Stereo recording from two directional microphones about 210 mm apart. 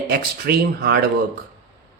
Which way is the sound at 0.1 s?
45° right (ahead or behind).